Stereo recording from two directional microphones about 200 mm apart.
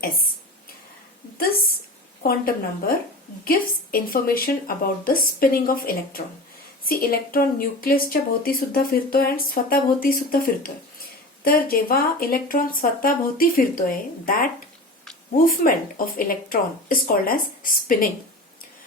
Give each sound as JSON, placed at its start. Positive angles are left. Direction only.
{"t": 1.4, "sound": "a woman's voice", "side_deg": 45}